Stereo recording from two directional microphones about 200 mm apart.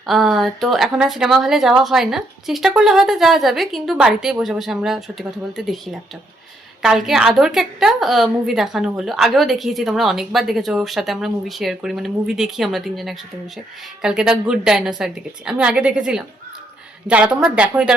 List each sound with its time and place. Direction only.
0.0 s a woman's voice: centre (ahead or behind)